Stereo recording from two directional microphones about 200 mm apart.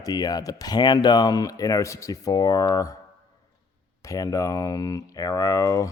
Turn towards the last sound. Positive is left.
turn(degrees=15)  # may be behind; listen again after turning